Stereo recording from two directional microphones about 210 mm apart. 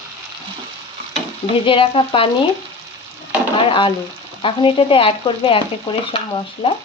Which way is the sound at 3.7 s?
25° left (ahead or behind).